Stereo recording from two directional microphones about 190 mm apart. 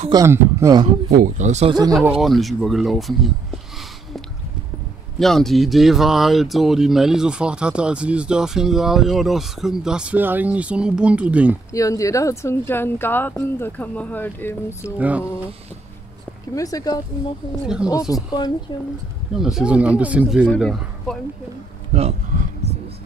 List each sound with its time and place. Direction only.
0.1 s speech: 15° right (ahead or behind)
1.1 s speech: 45° right (ahead or behind)
1.7 s speech: 20° right (ahead or behind)
2.0 s speech: centre (ahead or behind)
5.2 s speech: centre (ahead or behind)
11.7 s speech: 15° left (ahead or behind)
15.0 s speech: 10° right (ahead or behind)
16.5 s speech: 20° left (ahead or behind)
19.3 s speech: centre (ahead or behind)
21.9 s speech: 30° right (ahead or behind)